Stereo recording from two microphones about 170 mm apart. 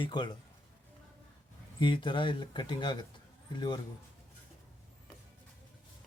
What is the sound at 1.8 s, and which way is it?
Speech, 30° left (ahead or behind).